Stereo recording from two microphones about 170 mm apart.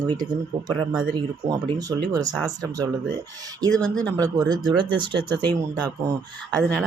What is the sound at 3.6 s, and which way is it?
Speech, 20° right (ahead or behind).